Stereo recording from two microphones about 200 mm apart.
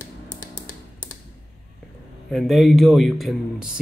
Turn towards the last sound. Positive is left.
turn(degrees=0)  # may be behind; listen again after turning